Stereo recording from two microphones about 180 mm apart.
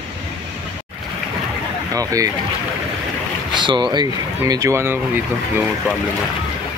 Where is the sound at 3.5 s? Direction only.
25° right (ahead or behind).